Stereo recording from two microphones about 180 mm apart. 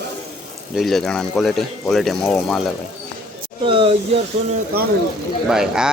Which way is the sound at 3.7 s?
30° right (ahead or behind).